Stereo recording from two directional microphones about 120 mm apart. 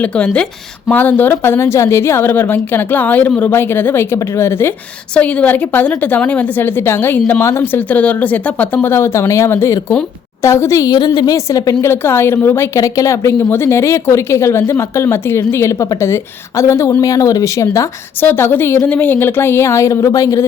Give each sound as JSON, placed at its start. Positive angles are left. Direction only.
{"t": 0.0, "sound": "a woman's voice", "side_deg": 10}
{"t": 5.1, "sound": "a woman's voice", "side_deg": 10}